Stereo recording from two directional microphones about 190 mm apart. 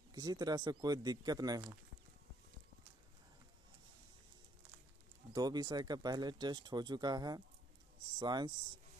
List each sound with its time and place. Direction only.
0.1 s speech: 20° right (ahead or behind)
5.3 s speech: 20° right (ahead or behind)